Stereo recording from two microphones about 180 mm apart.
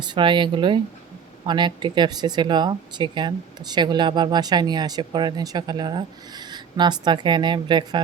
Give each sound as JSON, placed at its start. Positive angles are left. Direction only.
{"t": 0.0, "sound": "speech", "side_deg": -25}